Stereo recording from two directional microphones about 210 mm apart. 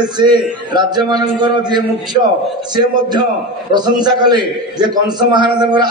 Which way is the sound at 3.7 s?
20° right (ahead or behind).